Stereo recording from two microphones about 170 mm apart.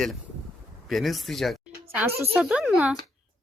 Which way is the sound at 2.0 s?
15° right (ahead or behind).